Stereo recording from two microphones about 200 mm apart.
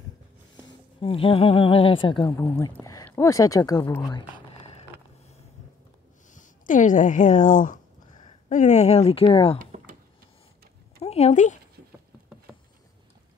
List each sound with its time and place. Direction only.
1.0 s a woman's voice: 25° left (ahead or behind)
6.3 s speech: 40° left (ahead or behind)
11.1 s speech: 35° left (ahead or behind)